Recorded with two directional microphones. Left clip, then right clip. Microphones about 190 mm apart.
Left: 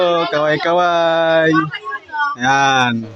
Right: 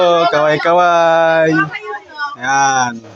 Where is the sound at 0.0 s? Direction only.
10° left (ahead or behind).